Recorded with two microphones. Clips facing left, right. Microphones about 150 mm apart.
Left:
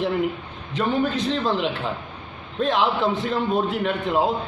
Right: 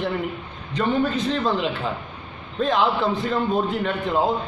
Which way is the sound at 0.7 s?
Centre (ahead or behind).